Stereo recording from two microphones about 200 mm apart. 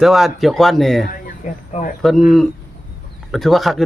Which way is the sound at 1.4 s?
40° left (ahead or behind).